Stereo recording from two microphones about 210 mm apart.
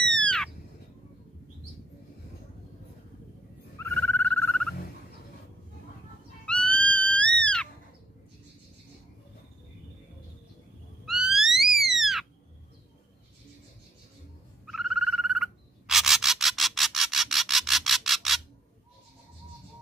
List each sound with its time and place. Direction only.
0.0 s squawk: 5° left (ahead or behind)
3.7 s frog: 10° left (ahead or behind)
6.4 s music: 5° left (ahead or behind)
11.1 s a sound: centre (ahead or behind)
14.7 s frog: centre (ahead or behind)